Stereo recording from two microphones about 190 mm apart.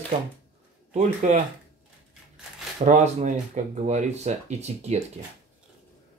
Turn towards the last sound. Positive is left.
turn(degrees=-35)  # may be behind; listen again after turning